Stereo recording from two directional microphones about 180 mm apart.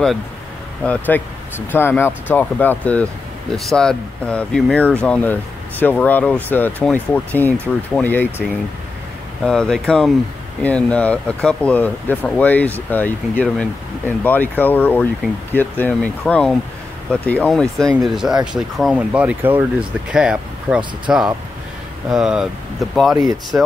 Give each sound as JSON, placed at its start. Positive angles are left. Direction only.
{"t": 0.8, "sound": "speech", "side_deg": 10}
{"t": 23.1, "sound": "speech", "side_deg": -20}